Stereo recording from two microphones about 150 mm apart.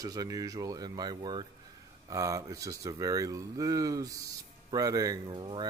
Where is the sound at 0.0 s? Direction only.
25° right (ahead or behind).